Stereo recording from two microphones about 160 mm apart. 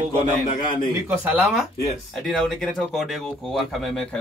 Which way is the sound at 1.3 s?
5° right (ahead or behind).